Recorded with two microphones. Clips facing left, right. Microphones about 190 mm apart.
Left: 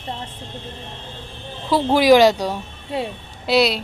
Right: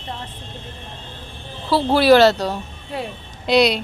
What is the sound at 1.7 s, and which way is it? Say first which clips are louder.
A woman's voice: even; 15° left (ahead or behind).